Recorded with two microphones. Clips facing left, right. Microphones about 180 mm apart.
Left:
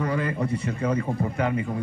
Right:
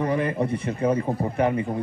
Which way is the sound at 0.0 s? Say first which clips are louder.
Right 3 dB; 25° right (ahead or behind).